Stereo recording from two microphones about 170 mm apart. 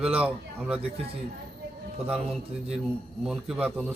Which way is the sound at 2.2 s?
35° right (ahead or behind).